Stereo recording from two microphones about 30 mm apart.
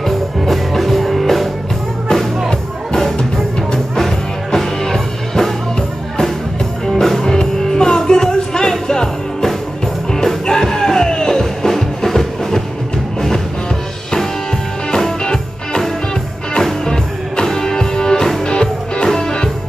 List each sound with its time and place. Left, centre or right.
0.5 s music: centre
2.9 s music: left
3.9 s music: centre
6.9 s music: centre
15.0 s music: centre
16.8 s music: left